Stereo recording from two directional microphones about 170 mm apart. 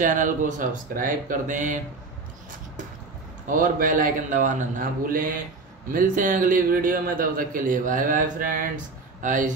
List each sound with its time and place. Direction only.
0.0 s a man's voice: 50° right (ahead or behind)
3.4 s a man's voice: 50° right (ahead or behind)